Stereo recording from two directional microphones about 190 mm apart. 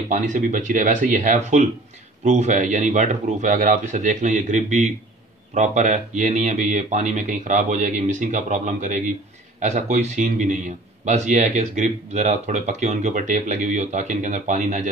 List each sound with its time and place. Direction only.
0.1 s speech: 40° right (ahead or behind)